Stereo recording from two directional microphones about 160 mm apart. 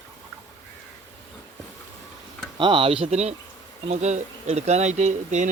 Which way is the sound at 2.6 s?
30° right (ahead or behind).